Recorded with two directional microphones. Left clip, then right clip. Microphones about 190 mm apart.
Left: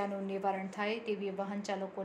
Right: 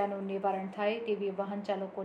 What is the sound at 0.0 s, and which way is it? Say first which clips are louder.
A woman's voice: right 3 dB; 35° left (ahead or behind).